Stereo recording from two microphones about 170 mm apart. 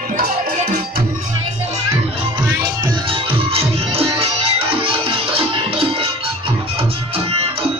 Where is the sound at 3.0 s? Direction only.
30° right (ahead or behind).